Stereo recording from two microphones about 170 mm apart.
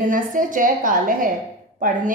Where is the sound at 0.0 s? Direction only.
50° right (ahead or behind).